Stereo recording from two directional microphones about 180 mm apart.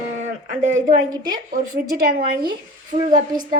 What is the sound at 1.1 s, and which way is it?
Speech, 20° right (ahead or behind).